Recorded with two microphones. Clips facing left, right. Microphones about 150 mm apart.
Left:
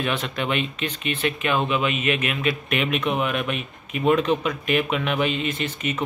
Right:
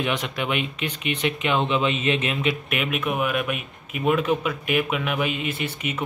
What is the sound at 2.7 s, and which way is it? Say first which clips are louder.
Speech: left 2 dB; 5° right (ahead or behind).